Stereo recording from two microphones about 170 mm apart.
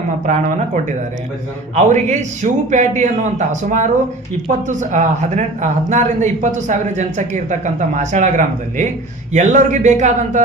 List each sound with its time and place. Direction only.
0.3 s speech: 45° right (ahead or behind)